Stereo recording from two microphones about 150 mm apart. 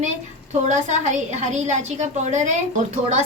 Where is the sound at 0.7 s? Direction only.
50° right (ahead or behind).